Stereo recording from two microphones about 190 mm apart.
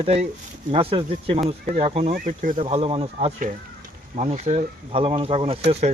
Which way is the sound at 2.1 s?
45° right (ahead or behind).